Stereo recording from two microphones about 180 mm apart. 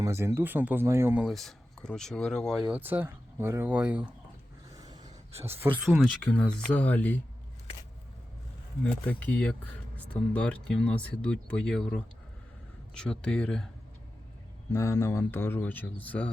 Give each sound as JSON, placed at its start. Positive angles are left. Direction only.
{"t": 0.0, "sound": "speech", "side_deg": -15}
{"t": 2.6, "sound": "speech", "side_deg": -10}
{"t": 4.7, "sound": "speech", "side_deg": -20}
{"t": 8.8, "sound": "speech", "side_deg": 10}
{"t": 14.7, "sound": "speech", "side_deg": 15}